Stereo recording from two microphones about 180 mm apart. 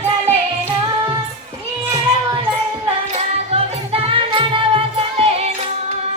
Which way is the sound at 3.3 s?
35° right (ahead or behind).